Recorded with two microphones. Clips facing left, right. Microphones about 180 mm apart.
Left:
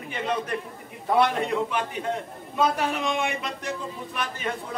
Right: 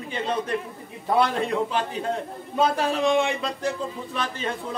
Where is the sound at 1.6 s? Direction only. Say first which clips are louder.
Right 2 dB; 30° right (ahead or behind).